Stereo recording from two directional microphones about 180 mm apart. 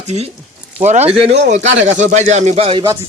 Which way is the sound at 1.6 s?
90° right.